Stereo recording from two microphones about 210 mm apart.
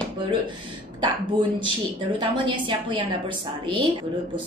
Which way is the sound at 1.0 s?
25° right (ahead or behind).